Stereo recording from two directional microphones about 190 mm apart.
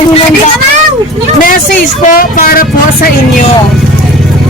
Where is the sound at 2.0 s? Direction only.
50° left (ahead or behind).